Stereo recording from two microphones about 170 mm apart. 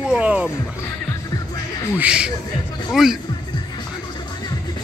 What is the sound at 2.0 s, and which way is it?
Speech, 5° right (ahead or behind).